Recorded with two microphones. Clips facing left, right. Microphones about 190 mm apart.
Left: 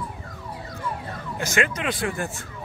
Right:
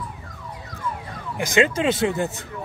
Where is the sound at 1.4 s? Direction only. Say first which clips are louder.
Right 6 dB; 25° right (ahead or behind).